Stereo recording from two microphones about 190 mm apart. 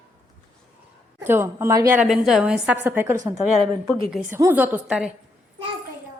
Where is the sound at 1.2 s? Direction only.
10° right (ahead or behind).